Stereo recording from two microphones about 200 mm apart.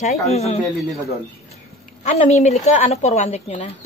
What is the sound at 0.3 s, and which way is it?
Speech, 30° left (ahead or behind).